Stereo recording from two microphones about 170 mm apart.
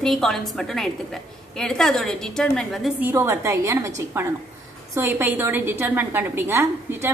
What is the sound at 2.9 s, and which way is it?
A woman's voice, 15° right (ahead or behind).